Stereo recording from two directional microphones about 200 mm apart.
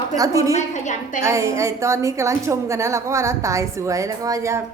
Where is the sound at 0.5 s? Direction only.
35° left (ahead or behind).